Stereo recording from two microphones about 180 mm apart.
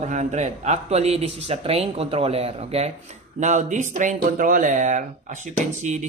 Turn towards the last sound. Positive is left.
turn(degrees=-40)  # may be behind; listen again after turning